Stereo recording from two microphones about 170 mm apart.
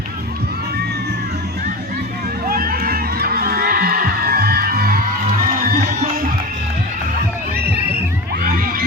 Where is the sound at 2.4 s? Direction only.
60° right (ahead or behind); by 6.2 s 45° right (ahead or behind).